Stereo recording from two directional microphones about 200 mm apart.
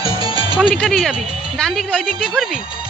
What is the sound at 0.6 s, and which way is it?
A woman's voice, centre (ahead or behind).